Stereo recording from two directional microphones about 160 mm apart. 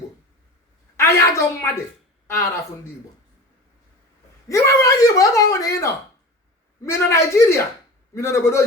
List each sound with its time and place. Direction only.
0.9 s speech: 15° left (ahead or behind)
4.4 s speech: 20° left (ahead or behind)